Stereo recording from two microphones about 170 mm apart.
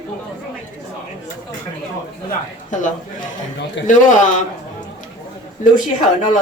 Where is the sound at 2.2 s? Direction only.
50° left (ahead or behind).